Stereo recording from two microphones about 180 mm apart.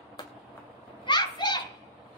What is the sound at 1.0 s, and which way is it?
Children playing, 25° left (ahead or behind).